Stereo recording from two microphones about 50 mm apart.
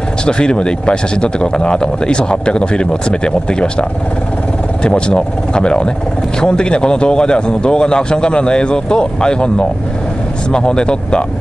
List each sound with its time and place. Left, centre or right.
0.2 s speech: centre
4.8 s a man's voice: centre